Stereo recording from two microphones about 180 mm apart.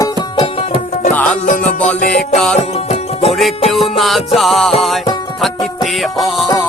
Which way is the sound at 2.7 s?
35° left (ahead or behind).